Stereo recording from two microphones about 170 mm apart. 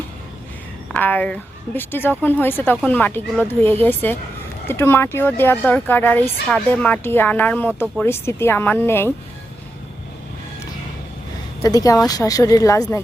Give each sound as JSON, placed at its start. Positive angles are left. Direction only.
{"t": 0.9, "sound": "speech", "side_deg": 10}
{"t": 11.6, "sound": "a woman's voice", "side_deg": 20}